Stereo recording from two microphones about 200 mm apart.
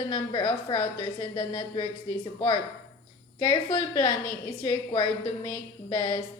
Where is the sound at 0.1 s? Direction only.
20° left (ahead or behind).